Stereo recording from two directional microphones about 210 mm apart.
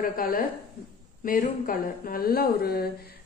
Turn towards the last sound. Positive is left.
turn(degrees=45)  # may be behind; listen again after turning